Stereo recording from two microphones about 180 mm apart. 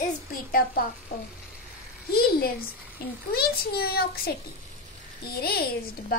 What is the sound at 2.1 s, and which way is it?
A child's voice, 55° left (ahead or behind).